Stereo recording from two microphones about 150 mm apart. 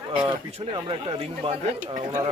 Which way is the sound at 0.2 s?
35° right (ahead or behind).